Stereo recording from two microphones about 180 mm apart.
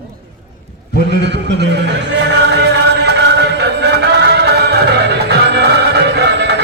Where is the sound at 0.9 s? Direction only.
70° right (ahead or behind).